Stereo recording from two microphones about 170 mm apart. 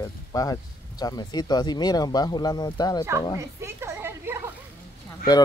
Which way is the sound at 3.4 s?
15° right (ahead or behind).